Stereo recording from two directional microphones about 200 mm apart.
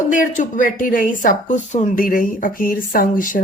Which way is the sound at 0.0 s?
40° left (ahead or behind).